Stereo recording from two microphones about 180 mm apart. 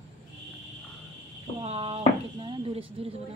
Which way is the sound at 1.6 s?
35° right (ahead or behind).